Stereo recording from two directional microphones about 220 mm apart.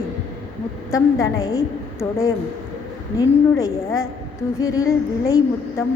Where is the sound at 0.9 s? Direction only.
15° left (ahead or behind).